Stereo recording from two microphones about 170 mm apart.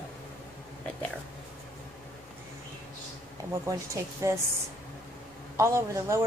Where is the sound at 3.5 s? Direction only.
15° right (ahead or behind).